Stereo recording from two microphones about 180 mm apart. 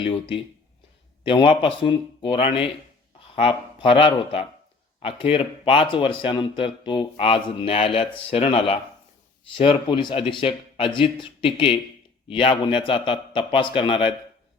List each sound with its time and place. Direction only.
0.0 s a man's voice: 30° left (ahead or behind)